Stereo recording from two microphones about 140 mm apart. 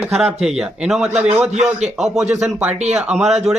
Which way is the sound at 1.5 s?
55° right (ahead or behind).